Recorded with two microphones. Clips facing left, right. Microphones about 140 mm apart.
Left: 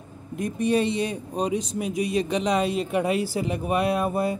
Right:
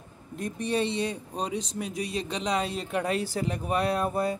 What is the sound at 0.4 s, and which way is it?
Speech, 10° left (ahead or behind).